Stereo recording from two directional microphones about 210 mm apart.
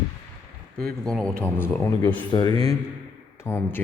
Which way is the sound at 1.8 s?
20° left (ahead or behind).